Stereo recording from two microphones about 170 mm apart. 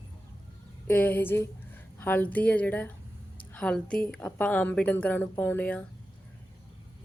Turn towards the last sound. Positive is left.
turn(degrees=10)  # may be behind; listen again after turning